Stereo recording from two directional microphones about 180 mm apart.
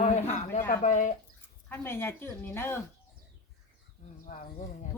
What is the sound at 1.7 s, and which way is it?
Speech, 10° left (ahead or behind).